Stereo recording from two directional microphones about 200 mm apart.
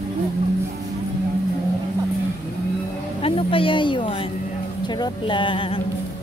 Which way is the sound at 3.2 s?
25° left (ahead or behind).